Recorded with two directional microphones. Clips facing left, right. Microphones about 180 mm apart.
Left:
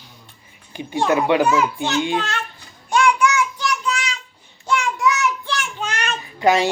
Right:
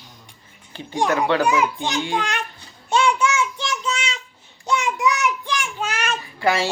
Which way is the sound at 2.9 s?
25° right (ahead or behind).